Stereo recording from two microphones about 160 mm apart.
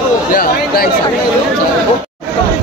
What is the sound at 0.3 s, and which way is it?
Speech, 65° left (ahead or behind).